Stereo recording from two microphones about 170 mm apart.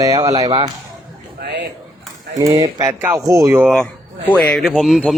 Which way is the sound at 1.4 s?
80° right.